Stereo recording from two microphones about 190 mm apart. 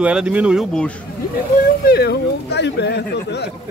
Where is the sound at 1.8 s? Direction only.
60° left (ahead or behind).